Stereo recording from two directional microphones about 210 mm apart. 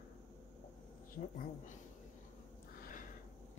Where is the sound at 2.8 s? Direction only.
40° left (ahead or behind).